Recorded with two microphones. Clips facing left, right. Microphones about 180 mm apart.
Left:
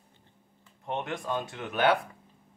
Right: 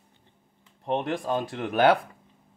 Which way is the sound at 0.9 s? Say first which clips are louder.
Right 6 dB; 35° right (ahead or behind).